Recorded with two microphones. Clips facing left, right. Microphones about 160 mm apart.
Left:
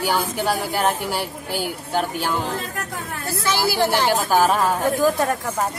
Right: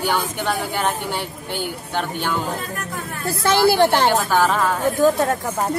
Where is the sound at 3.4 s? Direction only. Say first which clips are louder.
Right 6 dB; 55° right (ahead or behind).